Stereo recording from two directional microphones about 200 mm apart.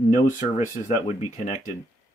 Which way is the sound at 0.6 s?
35° left (ahead or behind).